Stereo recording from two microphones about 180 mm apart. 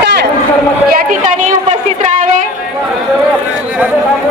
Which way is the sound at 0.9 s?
50° right (ahead or behind).